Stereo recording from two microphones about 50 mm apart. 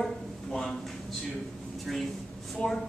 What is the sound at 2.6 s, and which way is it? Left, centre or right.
Speech, left.